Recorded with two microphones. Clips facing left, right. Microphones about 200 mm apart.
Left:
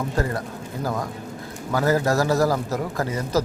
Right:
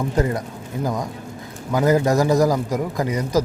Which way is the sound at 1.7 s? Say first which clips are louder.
Right 3 dB; 15° right (ahead or behind).